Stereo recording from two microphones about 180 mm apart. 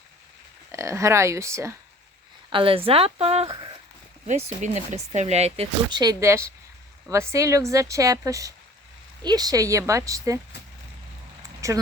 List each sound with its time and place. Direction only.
0.7 s speech: 15° right (ahead or behind)
2.5 s speech: 30° right (ahead or behind)
4.3 s speech: 40° right (ahead or behind); by 10.4 s 20° right (ahead or behind)
11.6 s speech: 15° right (ahead or behind)